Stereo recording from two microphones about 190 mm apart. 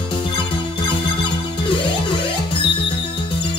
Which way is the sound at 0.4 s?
25° left (ahead or behind).